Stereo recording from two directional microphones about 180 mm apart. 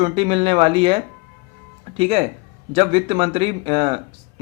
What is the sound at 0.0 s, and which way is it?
Speech, 30° right (ahead or behind).